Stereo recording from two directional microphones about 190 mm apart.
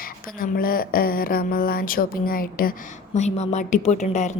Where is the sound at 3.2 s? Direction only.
35° left (ahead or behind).